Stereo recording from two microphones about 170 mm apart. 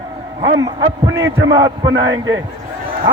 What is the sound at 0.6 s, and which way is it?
A man's voice, 20° right (ahead or behind).